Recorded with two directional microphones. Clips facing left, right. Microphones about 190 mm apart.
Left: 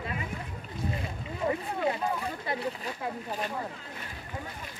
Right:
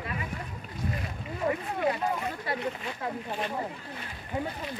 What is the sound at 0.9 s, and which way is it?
Boat, 25° left (ahead or behind).